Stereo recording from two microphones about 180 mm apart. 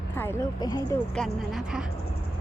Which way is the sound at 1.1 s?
Centre (ahead or behind).